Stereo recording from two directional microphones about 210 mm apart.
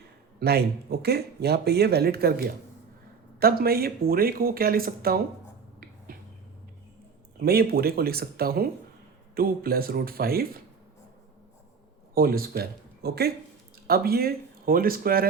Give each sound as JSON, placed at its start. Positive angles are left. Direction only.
{"t": 0.3, "sound": "speech", "side_deg": -50}
{"t": 6.1, "sound": "a sound", "side_deg": -45}
{"t": 7.3, "sound": "speech", "side_deg": -45}
{"t": 12.1, "sound": "speech", "side_deg": -45}